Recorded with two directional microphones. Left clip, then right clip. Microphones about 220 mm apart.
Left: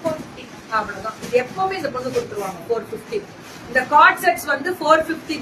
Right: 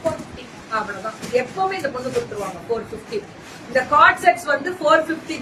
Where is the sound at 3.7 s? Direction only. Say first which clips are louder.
Left 1 dB; 10° left (ahead or behind).